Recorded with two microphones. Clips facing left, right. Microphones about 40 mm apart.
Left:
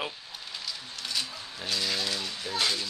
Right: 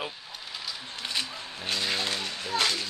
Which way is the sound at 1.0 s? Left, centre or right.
Right.